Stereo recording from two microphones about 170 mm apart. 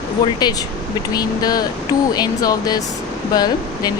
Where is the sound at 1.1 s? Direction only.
20° left (ahead or behind).